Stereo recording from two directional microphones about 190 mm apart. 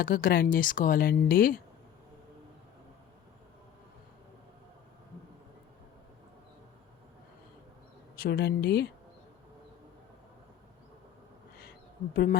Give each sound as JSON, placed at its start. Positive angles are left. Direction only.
{"t": 0.0, "sound": "speech", "side_deg": 50}
{"t": 8.1, "sound": "speech", "side_deg": 55}
{"t": 12.1, "sound": "speech", "side_deg": 50}